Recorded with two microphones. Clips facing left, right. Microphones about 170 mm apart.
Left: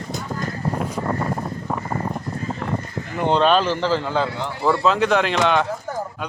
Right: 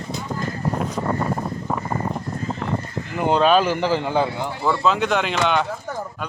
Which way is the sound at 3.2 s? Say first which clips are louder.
Right 1 dB; 5° right (ahead or behind).